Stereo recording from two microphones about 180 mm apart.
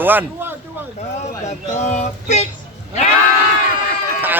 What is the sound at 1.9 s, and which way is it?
Female singing, 40° left (ahead or behind).